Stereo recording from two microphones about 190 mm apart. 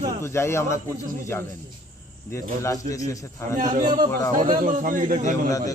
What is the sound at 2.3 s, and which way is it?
Speech, 15° left (ahead or behind).